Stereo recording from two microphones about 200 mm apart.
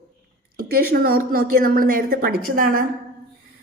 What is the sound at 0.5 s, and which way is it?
A woman's voice, 50° right (ahead or behind).